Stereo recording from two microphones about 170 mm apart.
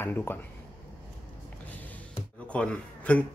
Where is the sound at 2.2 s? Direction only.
10° left (ahead or behind).